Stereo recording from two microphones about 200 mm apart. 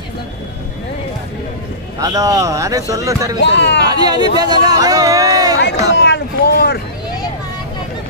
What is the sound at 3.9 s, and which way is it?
Speech, 20° right (ahead or behind).